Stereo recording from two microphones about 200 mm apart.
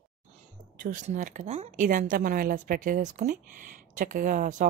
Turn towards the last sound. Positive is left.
turn(degrees=-40)  # may be behind; listen again after turning